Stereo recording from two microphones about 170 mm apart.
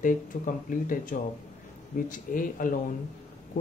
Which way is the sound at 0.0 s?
50° left (ahead or behind).